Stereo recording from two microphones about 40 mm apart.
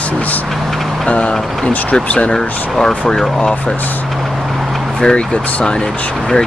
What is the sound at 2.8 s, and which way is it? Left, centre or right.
Speech, centre.